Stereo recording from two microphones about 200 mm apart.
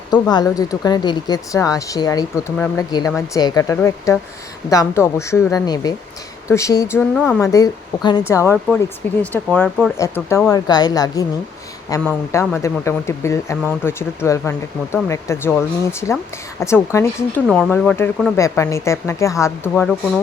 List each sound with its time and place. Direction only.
0.1 s speech: 20° left (ahead or behind); by 9.9 s centre (ahead or behind)
10.0 s a woman's voice: 15° left (ahead or behind)